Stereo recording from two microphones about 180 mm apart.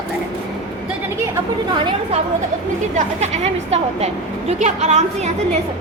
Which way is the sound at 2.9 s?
40° right (ahead or behind).